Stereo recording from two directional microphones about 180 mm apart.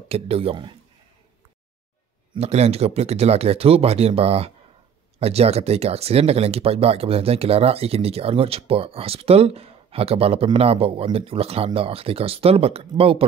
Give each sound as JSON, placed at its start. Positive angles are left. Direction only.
{"t": 0.1, "sound": "speech", "side_deg": -30}
{"t": 2.3, "sound": "speech", "side_deg": -35}